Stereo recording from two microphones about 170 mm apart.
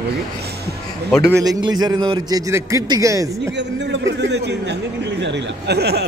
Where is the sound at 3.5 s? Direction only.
90° right.